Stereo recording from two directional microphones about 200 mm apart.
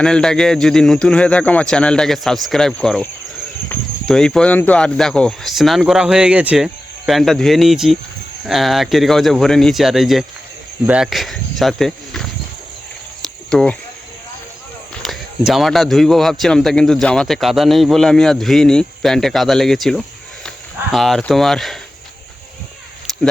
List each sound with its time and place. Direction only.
0.0 s speech: 5° left (ahead or behind)
13.5 s speech: 5° left (ahead or behind)
14.9 s speech: centre (ahead or behind)